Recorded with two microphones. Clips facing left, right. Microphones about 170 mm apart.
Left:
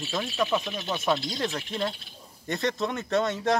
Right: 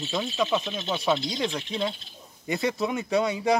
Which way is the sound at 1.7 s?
Centre (ahead or behind).